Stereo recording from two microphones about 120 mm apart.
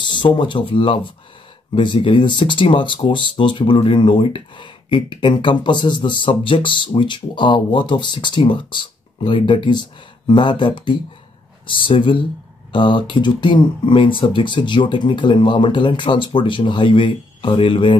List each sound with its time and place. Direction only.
0.0 s speech: 40° left (ahead or behind)